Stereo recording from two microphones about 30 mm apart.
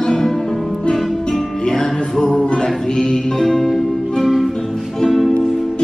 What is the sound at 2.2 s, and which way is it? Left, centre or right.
Music, left.